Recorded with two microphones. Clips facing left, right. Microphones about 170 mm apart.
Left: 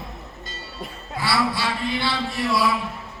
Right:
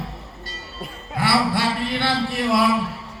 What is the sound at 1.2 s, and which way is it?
Speech, 55° right (ahead or behind).